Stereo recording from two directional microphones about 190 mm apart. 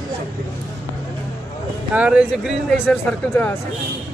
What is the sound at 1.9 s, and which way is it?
Speech, 5° right (ahead or behind).